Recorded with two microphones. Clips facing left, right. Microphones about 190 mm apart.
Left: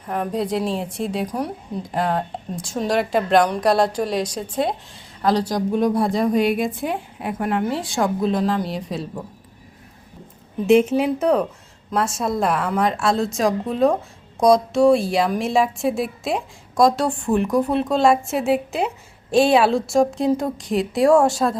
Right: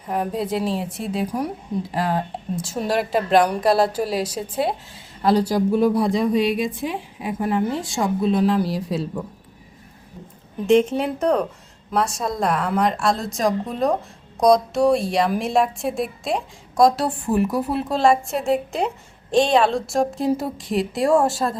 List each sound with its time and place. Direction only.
0.1 s a woman's voice: 5° right (ahead or behind)
5.5 s a woman's voice: 5° right (ahead or behind)
6.3 s a woman's voice: 55° left (ahead or behind)
7.8 s a woman's voice: centre (ahead or behind)
10.7 s a woman's voice: 5° left (ahead or behind)